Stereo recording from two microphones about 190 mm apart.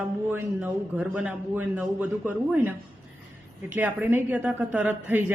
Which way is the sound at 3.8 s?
10° right (ahead or behind).